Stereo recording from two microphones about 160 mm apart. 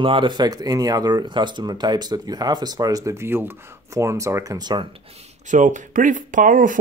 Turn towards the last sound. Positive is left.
turn(degrees=-55)  # may be behind; listen again after turning